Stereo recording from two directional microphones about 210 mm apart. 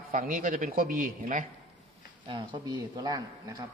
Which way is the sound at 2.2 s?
20° right (ahead or behind).